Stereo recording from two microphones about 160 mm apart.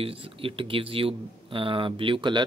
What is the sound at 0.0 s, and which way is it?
Speech, 35° right (ahead or behind).